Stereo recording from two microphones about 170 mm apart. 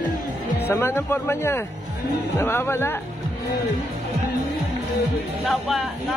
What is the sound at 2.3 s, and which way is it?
Speech, 15° left (ahead or behind).